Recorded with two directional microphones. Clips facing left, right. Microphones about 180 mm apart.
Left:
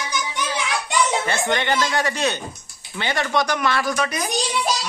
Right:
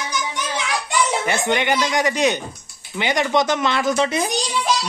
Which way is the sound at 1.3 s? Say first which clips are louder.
Right 2 dB; 15° right (ahead or behind).